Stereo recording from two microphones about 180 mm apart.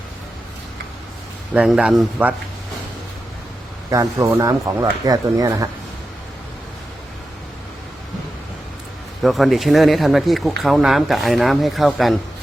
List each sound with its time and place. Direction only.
1.5 s speech: 5° right (ahead or behind)
3.8 s speech: 15° right (ahead or behind)
9.2 s speech: centre (ahead or behind)